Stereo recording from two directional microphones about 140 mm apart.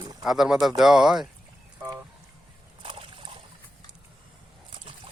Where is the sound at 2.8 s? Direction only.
35° right (ahead or behind).